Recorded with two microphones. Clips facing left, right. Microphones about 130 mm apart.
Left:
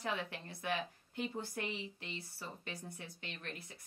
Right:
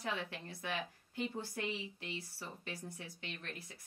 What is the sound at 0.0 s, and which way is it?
Speech, 20° left (ahead or behind).